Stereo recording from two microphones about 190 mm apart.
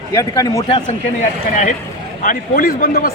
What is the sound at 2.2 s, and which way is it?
Speech, 50° left (ahead or behind).